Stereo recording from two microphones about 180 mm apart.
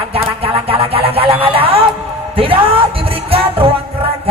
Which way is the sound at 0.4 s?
30° right (ahead or behind).